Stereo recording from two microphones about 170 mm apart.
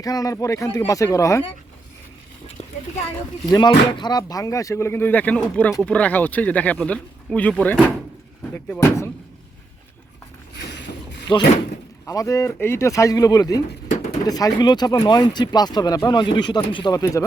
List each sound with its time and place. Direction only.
0.0 s speech: 20° left (ahead or behind)
2.6 s a sound: 40° left (ahead or behind)
3.4 s speech: 25° left (ahead or behind); by 7.5 s 10° left (ahead or behind)
8.5 s speech: 10° left (ahead or behind)
10.5 s a sound: 85° left
12.0 s speech: 20° left (ahead or behind)